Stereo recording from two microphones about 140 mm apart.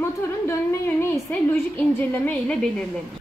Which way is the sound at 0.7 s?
20° left (ahead or behind).